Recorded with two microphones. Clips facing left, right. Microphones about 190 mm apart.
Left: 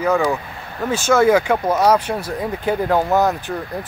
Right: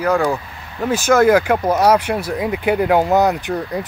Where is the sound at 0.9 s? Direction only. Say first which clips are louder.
Right 2 dB; 10° right (ahead or behind).